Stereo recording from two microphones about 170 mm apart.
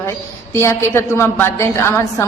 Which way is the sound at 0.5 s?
15° left (ahead or behind).